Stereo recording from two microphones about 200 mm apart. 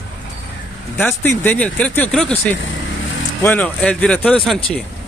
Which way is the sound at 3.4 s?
10° left (ahead or behind).